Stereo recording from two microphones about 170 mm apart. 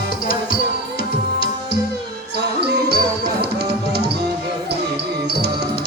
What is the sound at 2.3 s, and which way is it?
Music, 75° right (ahead or behind).